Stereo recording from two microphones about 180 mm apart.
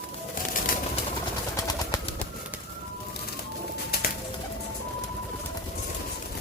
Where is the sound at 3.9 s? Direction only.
60° left (ahead or behind).